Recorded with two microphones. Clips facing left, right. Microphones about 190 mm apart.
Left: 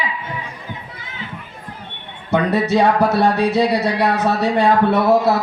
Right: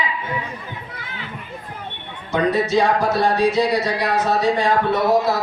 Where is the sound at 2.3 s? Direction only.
65° left (ahead or behind).